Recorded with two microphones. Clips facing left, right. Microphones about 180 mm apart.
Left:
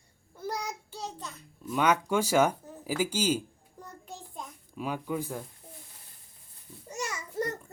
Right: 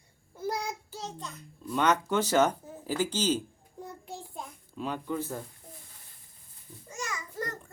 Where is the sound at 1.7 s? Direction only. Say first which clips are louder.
Even; 10° left (ahead or behind).